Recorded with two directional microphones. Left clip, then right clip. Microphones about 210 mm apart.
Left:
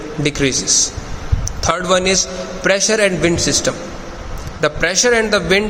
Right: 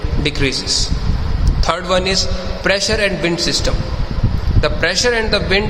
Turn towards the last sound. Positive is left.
turn(degrees=15)  # may be behind; listen again after turning